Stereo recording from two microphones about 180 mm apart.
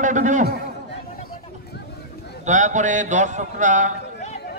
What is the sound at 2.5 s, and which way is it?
Speech, 40° right (ahead or behind).